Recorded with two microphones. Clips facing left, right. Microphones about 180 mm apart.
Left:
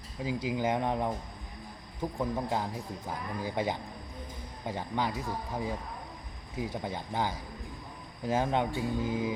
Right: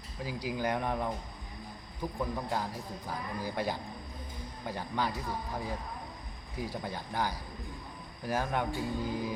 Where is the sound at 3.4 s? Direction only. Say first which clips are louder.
Left 3 dB; 20° left (ahead or behind).